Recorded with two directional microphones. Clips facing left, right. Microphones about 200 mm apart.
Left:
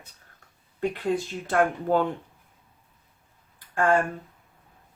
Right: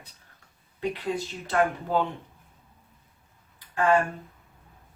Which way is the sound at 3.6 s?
50° left (ahead or behind).